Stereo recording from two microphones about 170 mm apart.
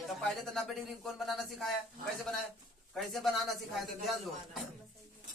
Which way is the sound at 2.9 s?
Centre (ahead or behind).